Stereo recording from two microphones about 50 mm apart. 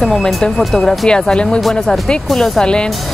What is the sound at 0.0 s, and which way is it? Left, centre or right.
Speech, centre.